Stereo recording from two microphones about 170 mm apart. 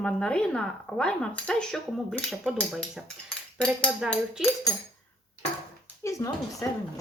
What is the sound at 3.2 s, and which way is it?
A woman's voice, 5° left (ahead or behind).